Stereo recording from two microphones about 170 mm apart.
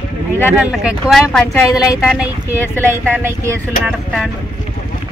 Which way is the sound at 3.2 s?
15° right (ahead or behind).